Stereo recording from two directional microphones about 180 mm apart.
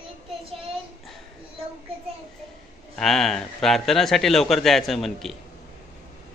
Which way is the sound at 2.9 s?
Centre (ahead or behind).